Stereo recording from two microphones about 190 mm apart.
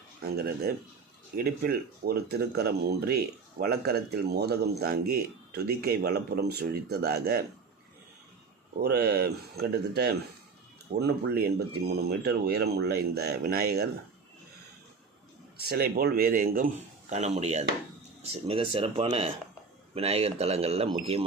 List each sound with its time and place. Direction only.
0.3 s speech: 55° right (ahead or behind)
8.8 s speech: 55° right (ahead or behind)
15.7 s a man's voice: 55° right (ahead or behind); by 21.2 s 30° right (ahead or behind)